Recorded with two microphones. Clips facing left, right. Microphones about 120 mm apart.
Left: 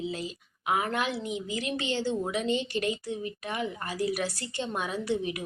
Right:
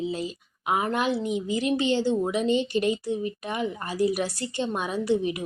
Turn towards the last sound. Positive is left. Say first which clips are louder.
# right 5 dB
turn(degrees=-25)  # may be behind; listen again after turning